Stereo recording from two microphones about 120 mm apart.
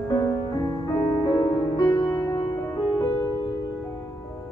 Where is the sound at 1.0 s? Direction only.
30° left (ahead or behind).